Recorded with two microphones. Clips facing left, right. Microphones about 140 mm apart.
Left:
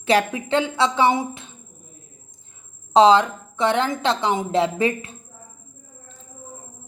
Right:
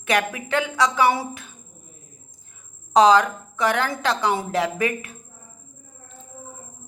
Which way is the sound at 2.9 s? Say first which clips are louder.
Left 1 dB; 25° left (ahead or behind).